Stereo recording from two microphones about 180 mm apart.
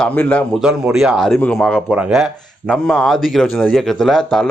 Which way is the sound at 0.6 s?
5° right (ahead or behind).